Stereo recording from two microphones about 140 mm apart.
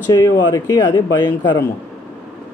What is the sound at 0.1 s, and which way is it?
Speech, 25° left (ahead or behind).